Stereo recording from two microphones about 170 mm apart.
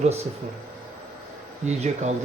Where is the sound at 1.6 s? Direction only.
40° right (ahead or behind).